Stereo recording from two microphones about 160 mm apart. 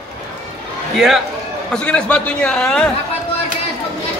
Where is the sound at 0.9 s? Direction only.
Centre (ahead or behind).